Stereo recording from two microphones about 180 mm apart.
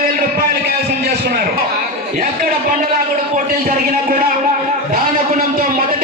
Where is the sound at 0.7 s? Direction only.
60° right (ahead or behind).